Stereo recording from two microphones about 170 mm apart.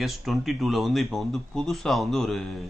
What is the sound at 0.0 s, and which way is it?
Speech, centre (ahead or behind).